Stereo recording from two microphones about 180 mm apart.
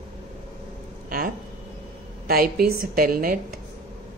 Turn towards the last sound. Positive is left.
turn(degrees=-55)  # may be behind; listen again after turning